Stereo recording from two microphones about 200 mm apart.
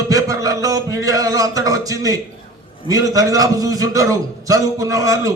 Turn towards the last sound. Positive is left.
turn(degrees=-15)  # may be behind; listen again after turning